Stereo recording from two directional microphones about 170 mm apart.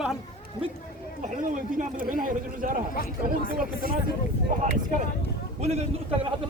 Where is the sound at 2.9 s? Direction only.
55° left (ahead or behind).